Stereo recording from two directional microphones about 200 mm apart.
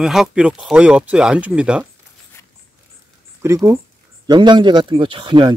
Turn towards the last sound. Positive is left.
turn(degrees=-25)  # may be behind; listen again after turning